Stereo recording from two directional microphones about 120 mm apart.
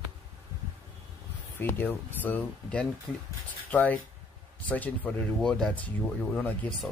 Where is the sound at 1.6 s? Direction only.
15° left (ahead or behind).